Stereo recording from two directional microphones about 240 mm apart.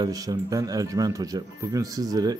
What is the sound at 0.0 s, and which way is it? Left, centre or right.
A man's voice, centre.